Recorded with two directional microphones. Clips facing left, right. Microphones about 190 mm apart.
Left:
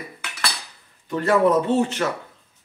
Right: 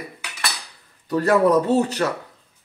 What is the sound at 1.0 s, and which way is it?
Speech, 40° right (ahead or behind).